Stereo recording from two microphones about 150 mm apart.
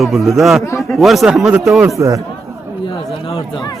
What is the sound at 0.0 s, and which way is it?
Speech, centre (ahead or behind).